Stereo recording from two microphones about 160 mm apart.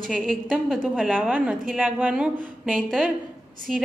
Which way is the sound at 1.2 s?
10° right (ahead or behind).